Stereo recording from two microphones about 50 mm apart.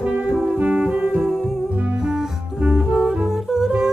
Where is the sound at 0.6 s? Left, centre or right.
Centre.